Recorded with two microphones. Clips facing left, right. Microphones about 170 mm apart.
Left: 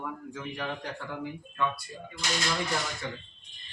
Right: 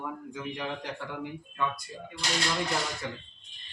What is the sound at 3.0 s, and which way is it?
Speech, 5° right (ahead or behind).